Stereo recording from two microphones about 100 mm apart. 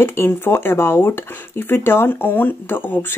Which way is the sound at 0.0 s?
25° left (ahead or behind).